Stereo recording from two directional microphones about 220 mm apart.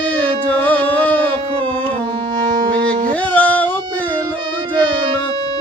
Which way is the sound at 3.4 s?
5° left (ahead or behind).